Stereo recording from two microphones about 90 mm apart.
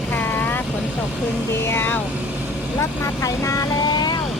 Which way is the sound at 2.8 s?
35° left (ahead or behind).